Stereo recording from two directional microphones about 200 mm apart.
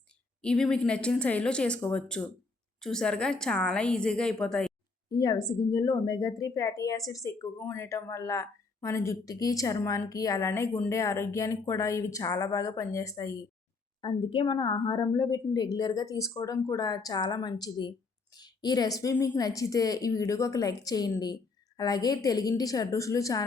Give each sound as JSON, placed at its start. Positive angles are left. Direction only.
{"t": 0.4, "sound": "speech", "side_deg": 5}
{"t": 5.1, "sound": "a woman's voice", "side_deg": 20}